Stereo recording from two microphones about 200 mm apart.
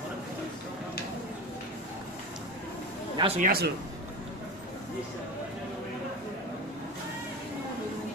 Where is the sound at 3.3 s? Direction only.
45° right (ahead or behind).